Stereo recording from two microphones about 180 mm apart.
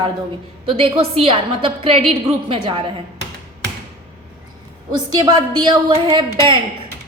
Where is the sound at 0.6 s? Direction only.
30° right (ahead or behind).